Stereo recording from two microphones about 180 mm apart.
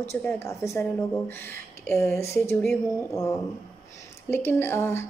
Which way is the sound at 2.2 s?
15° left (ahead or behind).